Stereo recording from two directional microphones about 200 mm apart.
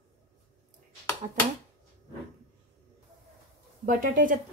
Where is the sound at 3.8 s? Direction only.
40° right (ahead or behind).